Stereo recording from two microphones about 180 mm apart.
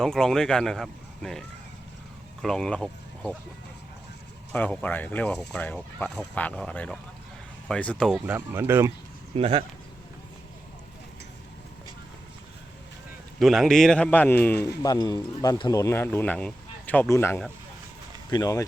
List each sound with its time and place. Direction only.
0.0 s speech: 5° left (ahead or behind)
4.5 s speech: 10° left (ahead or behind)
8.4 s speech: 10° right (ahead or behind)
9.3 s speech: 30° right (ahead or behind)
13.4 s speech: centre (ahead or behind)
14.5 s speech: 65° left (ahead or behind)
14.8 s speech: 25° left (ahead or behind)